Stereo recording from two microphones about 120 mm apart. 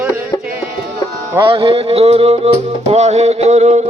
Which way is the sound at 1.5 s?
50° right (ahead or behind).